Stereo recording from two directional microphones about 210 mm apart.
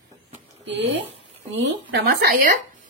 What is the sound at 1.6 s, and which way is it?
Speech, 55° right (ahead or behind).